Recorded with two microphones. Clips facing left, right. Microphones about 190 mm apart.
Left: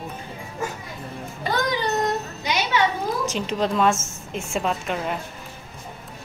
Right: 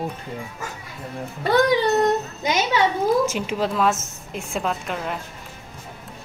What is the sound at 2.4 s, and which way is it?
Speech, 50° right (ahead or behind).